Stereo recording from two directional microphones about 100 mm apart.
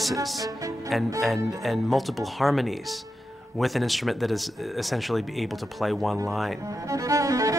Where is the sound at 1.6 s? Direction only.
Centre (ahead or behind).